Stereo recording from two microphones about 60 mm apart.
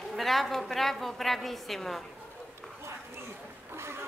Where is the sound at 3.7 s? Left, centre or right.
Right.